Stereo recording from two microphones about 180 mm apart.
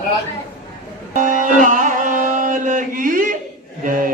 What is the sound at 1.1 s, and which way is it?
Music, 45° right (ahead or behind).